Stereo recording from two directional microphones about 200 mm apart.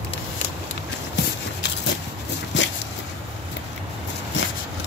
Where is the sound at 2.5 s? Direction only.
65° left (ahead or behind).